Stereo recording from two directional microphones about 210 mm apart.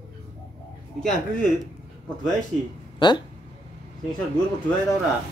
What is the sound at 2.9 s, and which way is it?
Speech, 20° left (ahead or behind).